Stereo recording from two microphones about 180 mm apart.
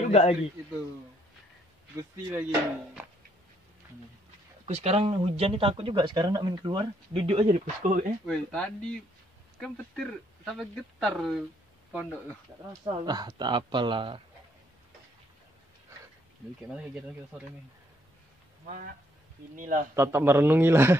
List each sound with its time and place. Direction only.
0.1 s a man's voice: 35° left (ahead or behind)
2.0 s a man's voice: 15° right (ahead or behind)
4.6 s speech: 35° right (ahead or behind)
7.8 s speech: 50° right (ahead or behind)
8.3 s speech: 5° left (ahead or behind)
12.8 s speech: 20° right (ahead or behind)
16.6 s speech: 5° right (ahead or behind)
19.5 s speech: 45° right (ahead or behind)
20.0 s a man's voice: 15° right (ahead or behind)